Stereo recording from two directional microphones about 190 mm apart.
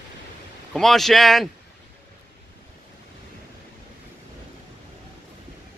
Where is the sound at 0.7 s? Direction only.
Centre (ahead or behind).